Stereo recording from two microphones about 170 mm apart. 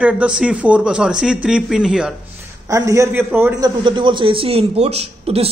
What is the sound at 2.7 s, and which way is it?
A man's voice, 20° right (ahead or behind).